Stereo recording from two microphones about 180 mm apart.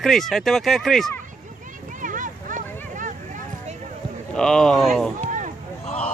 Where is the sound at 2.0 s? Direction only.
45° right (ahead or behind).